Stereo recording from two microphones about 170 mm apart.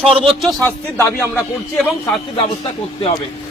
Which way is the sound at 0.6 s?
15° left (ahead or behind).